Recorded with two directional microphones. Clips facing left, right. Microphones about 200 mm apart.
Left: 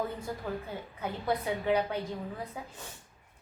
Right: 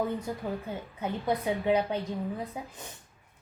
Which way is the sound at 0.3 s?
20° right (ahead or behind).